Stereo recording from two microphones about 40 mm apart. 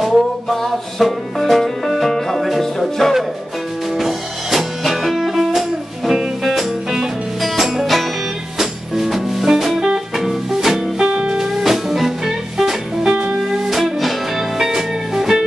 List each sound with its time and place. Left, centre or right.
0.6 s music: centre
11.1 s music: right
11.3 s music: centre
13.1 s music: right
13.9 s music: centre